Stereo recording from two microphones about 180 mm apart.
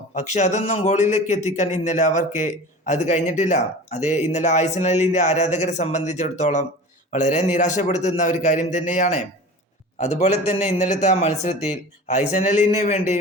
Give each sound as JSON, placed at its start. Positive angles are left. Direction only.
{"t": 0.1, "sound": "a man's voice", "side_deg": 40}